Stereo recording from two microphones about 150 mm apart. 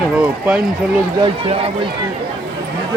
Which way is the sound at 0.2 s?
5° right (ahead or behind).